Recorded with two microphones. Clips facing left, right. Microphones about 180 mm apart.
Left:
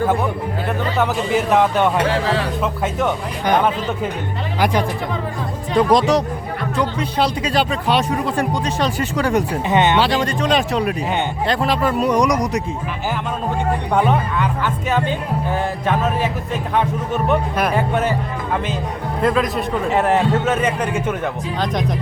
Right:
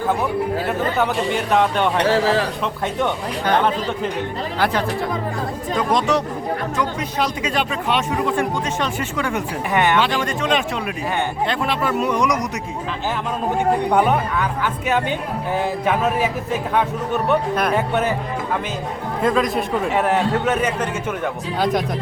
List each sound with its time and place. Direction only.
0.9 s speech: centre (ahead or behind)
3.4 s speech: 10° left (ahead or behind)
5.7 s speech: 35° left (ahead or behind)
9.6 s speech: 20° left (ahead or behind)
10.0 s speech: 35° left (ahead or behind)
13.9 s a man's voice: 10° right (ahead or behind)
17.6 s speech: 5° left (ahead or behind)
19.2 s a man's voice: centre (ahead or behind)